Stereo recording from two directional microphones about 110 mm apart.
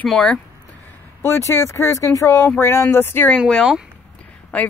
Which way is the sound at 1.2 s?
25° left (ahead or behind).